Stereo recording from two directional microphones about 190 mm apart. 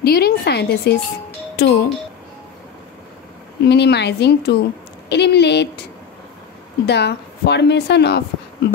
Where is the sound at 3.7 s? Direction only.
65° left (ahead or behind).